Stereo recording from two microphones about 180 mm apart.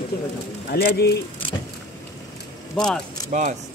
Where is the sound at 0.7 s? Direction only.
60° left (ahead or behind).